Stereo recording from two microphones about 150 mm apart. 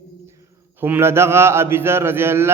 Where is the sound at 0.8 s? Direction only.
15° right (ahead or behind).